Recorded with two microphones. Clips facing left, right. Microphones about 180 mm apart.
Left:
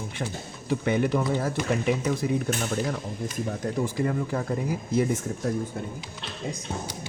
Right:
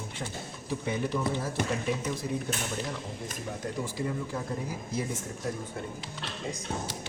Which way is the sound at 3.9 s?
65° left (ahead or behind).